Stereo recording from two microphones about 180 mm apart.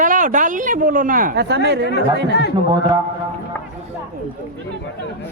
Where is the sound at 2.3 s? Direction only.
70° left (ahead or behind).